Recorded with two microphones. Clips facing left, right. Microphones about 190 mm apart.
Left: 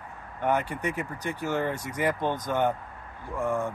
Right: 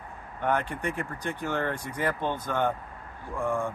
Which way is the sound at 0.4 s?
10° left (ahead or behind).